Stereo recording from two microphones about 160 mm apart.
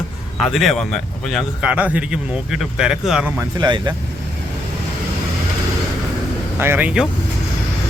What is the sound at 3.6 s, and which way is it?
Speech, 30° right (ahead or behind).